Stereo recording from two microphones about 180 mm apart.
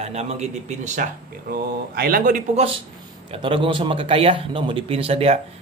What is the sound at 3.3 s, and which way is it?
A man's voice, 30° right (ahead or behind).